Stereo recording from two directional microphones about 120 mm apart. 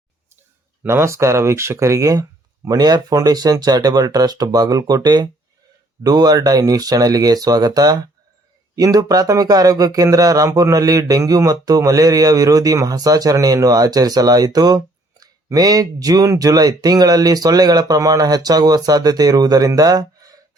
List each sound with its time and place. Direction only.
0.8 s speech: 20° right (ahead or behind)